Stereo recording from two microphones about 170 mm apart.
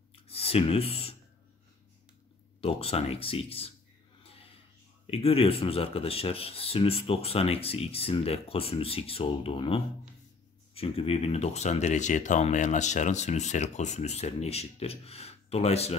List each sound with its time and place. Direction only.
0.1 s clicking: 35° left (ahead or behind)
2.6 s speech: 35° left (ahead or behind)
4.2 s a sound: 35° left (ahead or behind)
5.0 s speech: 35° left (ahead or behind)